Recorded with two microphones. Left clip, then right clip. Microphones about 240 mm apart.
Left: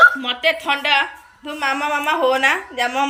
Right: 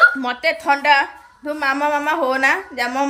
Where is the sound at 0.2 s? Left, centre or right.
Centre.